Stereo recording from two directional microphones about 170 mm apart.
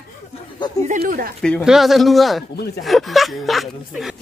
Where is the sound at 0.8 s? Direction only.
55° right (ahead or behind).